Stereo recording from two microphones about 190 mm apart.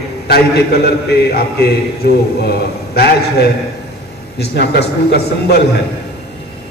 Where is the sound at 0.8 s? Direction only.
55° left (ahead or behind).